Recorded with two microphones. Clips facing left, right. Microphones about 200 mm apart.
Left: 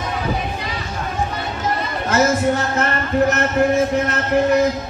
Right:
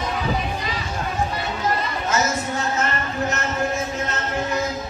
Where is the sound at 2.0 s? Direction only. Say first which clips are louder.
Left 9 dB; 55° left (ahead or behind).